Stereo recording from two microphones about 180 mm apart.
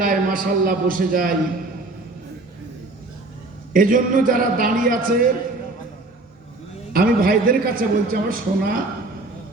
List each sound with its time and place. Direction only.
0.0 s a man's voice: 50° right (ahead or behind)
3.7 s a man's voice: 50° right (ahead or behind)
6.9 s a man's voice: 55° right (ahead or behind)